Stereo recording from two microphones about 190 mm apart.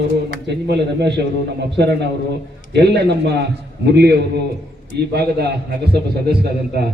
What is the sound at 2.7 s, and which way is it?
A man's voice, 60° right (ahead or behind).